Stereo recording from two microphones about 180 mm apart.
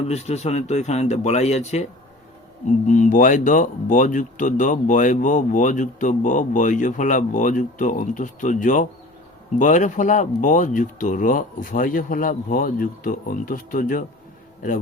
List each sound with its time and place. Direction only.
0.1 s speech: 35° left (ahead or behind)